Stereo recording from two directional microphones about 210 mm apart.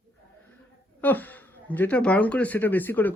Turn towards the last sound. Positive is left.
turn(degrees=10)  # may be behind; listen again after turning